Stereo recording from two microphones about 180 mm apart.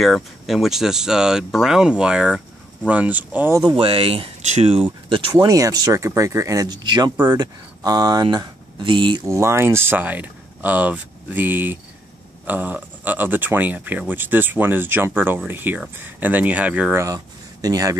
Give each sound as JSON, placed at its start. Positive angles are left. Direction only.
{"t": 0.0, "sound": "speech", "side_deg": 0}
{"t": 3.7, "sound": "speech", "side_deg": -30}